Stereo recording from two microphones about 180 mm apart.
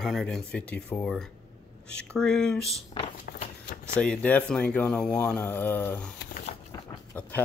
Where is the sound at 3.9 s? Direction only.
5° left (ahead or behind).